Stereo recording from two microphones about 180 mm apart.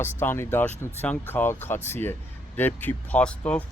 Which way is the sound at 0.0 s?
10° left (ahead or behind).